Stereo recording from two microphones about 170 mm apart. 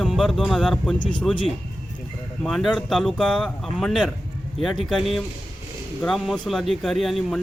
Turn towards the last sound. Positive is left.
turn(degrees=0)  # may be behind; listen again after turning